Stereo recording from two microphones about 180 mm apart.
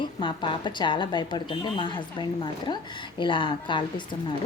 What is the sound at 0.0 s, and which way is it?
A woman's voice, 25° left (ahead or behind).